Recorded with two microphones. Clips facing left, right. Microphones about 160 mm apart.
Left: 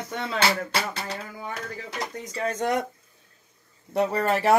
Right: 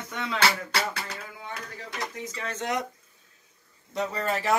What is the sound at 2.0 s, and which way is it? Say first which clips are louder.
Speech: left 5 dB; 35° left (ahead or behind).